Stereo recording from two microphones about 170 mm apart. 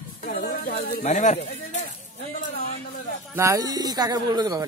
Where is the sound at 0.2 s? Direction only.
50° left (ahead or behind).